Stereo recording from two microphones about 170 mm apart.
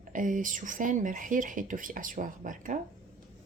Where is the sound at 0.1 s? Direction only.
50° right (ahead or behind).